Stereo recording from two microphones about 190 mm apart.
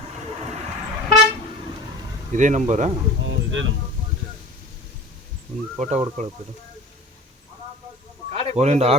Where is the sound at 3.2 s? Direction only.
80° right.